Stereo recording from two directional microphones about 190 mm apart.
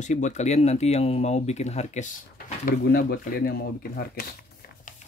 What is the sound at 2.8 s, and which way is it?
Speech, 55° left (ahead or behind).